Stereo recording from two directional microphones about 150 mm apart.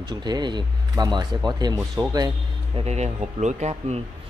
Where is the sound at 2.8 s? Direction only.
50° right (ahead or behind).